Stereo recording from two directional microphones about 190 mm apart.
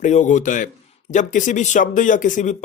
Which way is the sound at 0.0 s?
40° left (ahead or behind).